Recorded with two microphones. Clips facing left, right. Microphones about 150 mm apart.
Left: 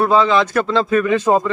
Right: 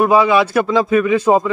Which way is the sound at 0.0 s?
10° right (ahead or behind).